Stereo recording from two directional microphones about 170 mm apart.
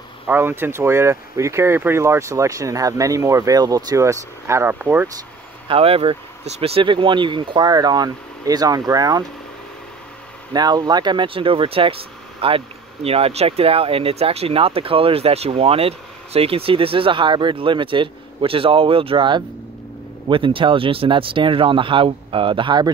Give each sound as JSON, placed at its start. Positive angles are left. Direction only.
{"t": 0.3, "sound": "speech", "side_deg": -15}
{"t": 5.7, "sound": "speech", "side_deg": -35}
{"t": 10.5, "sound": "speech", "side_deg": -25}